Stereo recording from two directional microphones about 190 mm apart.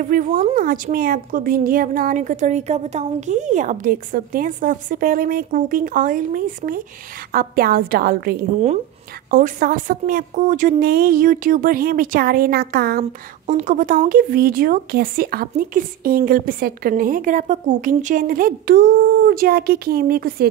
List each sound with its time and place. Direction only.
0.4 s speech: 45° right (ahead or behind)
13.5 s speech: 40° right (ahead or behind)